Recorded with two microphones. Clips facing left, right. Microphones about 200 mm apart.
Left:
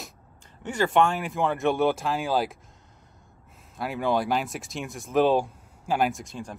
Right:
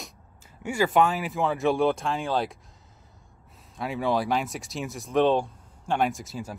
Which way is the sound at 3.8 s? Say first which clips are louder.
Even; centre (ahead or behind).